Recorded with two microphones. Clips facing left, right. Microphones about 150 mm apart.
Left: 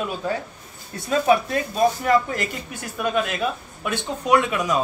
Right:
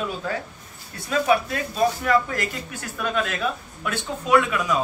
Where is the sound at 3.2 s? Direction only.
20° left (ahead or behind).